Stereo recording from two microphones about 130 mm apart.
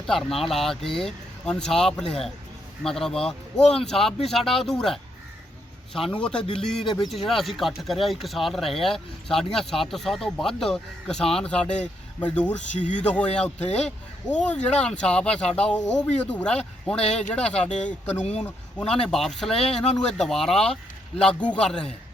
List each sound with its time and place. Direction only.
0.1 s speech: centre (ahead or behind)
6.8 s speech: 35° left (ahead or behind)
7.1 s speech: centre (ahead or behind)
15.3 s speech: 55° left (ahead or behind)
15.9 s speech: 10° left (ahead or behind)